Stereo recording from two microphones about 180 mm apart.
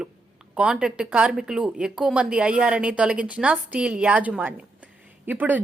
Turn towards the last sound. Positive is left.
turn(degrees=-10)  # may be behind; listen again after turning